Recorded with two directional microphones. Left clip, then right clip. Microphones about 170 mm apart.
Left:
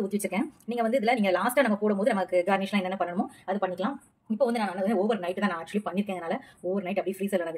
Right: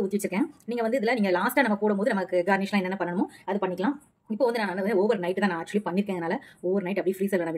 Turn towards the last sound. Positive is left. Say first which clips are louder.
# right 3 dB
turn(degrees=-30)  # may be behind; listen again after turning